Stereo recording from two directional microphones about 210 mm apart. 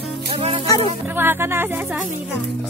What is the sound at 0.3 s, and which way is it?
Music, 25° right (ahead or behind).